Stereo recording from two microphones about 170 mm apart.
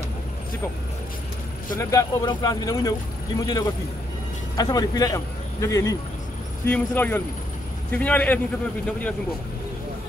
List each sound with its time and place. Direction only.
1.8 s speech: 20° left (ahead or behind)